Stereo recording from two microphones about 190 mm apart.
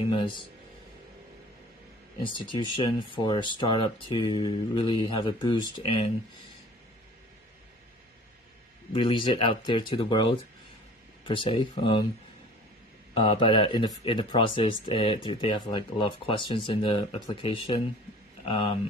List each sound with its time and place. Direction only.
0.1 s speech: 25° left (ahead or behind)
2.3 s speech: 25° left (ahead or behind)
8.9 s speech: 25° left (ahead or behind)
13.1 s speech: 25° left (ahead or behind)